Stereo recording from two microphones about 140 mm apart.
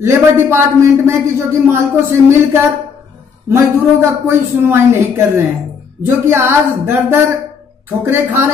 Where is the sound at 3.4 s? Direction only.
20° right (ahead or behind).